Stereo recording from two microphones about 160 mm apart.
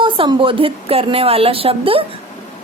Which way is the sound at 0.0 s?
30° right (ahead or behind).